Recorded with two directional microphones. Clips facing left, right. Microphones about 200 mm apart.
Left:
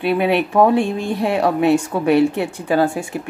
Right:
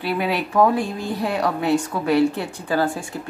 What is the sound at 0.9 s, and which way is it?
Speech, 70° left (ahead or behind).